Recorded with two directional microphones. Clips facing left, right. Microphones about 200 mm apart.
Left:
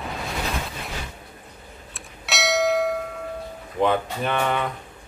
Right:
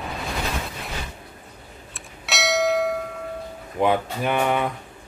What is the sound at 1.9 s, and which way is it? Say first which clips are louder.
Bell: even; centre (ahead or behind).